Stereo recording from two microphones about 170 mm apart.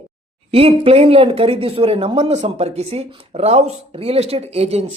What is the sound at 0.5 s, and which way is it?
Speech, 35° right (ahead or behind).